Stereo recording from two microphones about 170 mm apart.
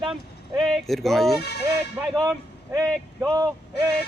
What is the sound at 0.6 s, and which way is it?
Speech, centre (ahead or behind).